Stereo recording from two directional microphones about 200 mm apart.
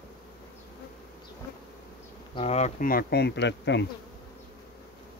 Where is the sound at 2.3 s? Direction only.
30° left (ahead or behind); by 3.9 s 60° left (ahead or behind).